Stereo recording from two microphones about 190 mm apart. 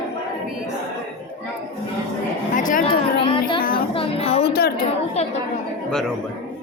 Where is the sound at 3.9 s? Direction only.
30° left (ahead or behind).